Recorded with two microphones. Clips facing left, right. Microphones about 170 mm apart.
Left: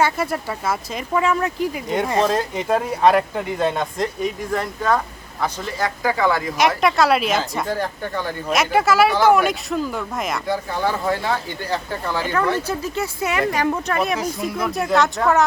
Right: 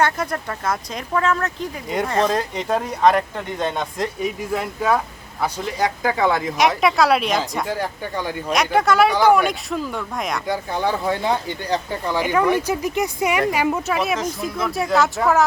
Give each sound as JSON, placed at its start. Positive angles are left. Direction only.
{"t": 0.0, "sound": "speech", "side_deg": 5}
{"t": 1.9, "sound": "speech", "side_deg": 0}
{"t": 6.6, "sound": "speech", "side_deg": 0}
{"t": 7.7, "sound": "speech", "side_deg": -10}
{"t": 8.4, "sound": "speech", "side_deg": 5}
{"t": 10.5, "sound": "speech", "side_deg": -15}